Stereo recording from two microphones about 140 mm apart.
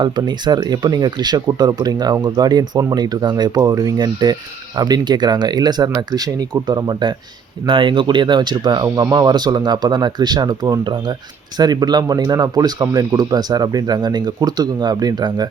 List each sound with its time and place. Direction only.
0.0 s speech: 30° right (ahead or behind)